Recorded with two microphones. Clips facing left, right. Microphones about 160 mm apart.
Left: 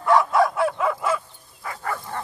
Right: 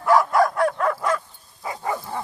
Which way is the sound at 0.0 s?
Centre (ahead or behind).